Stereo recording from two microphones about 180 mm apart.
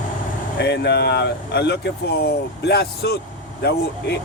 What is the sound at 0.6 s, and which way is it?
Speech, 70° left (ahead or behind).